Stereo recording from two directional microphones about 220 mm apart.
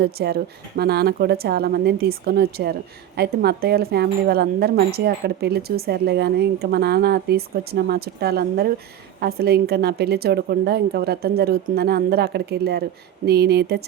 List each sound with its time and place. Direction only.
0.0 s speech: 45° right (ahead or behind)